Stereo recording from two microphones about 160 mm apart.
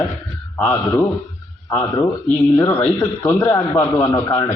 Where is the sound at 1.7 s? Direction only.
20° left (ahead or behind).